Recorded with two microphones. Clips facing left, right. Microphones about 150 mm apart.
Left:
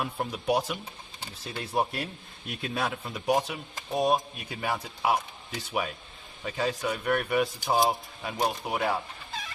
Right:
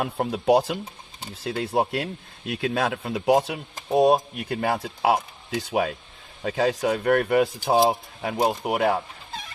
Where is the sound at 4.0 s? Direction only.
60° right (ahead or behind).